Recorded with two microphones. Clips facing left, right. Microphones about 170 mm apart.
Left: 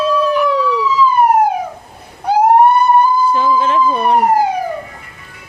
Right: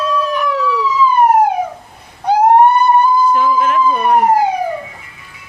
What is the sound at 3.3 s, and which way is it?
Emergency vehicle, 30° left (ahead or behind).